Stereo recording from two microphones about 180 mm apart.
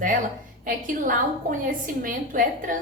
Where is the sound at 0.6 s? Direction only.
50° right (ahead or behind).